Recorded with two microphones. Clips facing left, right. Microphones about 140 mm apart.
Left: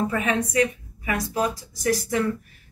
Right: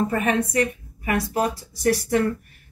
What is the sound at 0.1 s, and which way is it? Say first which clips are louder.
Speech: right 2 dB; 50° right (ahead or behind).